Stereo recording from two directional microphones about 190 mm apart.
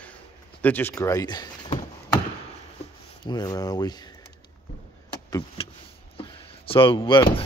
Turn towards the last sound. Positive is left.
turn(degrees=25)  # may be behind; listen again after turning